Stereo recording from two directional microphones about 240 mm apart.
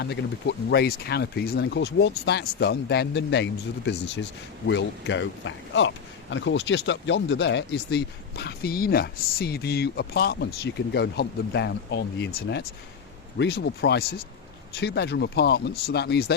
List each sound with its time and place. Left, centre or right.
0.0 s speech: left